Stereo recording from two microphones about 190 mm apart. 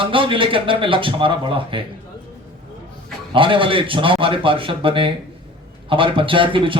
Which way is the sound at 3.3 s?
25° right (ahead or behind).